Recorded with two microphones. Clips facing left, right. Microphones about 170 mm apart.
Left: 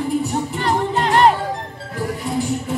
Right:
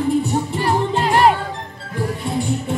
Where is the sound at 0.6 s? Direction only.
5° right (ahead or behind).